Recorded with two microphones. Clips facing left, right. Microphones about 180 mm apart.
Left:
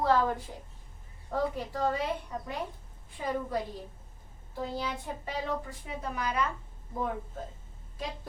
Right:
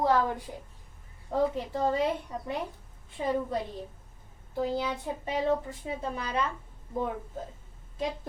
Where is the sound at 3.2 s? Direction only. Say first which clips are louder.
Right 4 dB; 25° right (ahead or behind).